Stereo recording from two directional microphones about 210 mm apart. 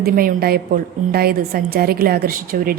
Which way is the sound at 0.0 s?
45° right (ahead or behind).